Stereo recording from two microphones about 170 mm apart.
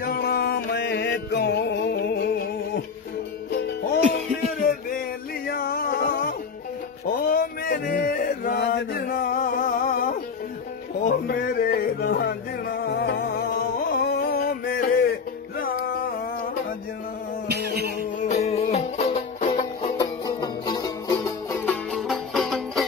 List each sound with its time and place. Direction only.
0.0 s music: 70° left (ahead or behind)
4.1 s a sound: 55° left (ahead or behind)
8.5 s male singing: 85° left; by 10.1 s 55° left (ahead or behind)
11.1 s music: 60° left (ahead or behind)
18.3 s music: 35° left (ahead or behind)
20.0 s music: 25° left (ahead or behind)
21.9 s music: centre (ahead or behind)